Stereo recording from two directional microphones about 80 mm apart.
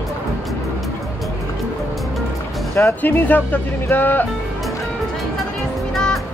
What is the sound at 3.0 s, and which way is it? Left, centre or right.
Speech, left.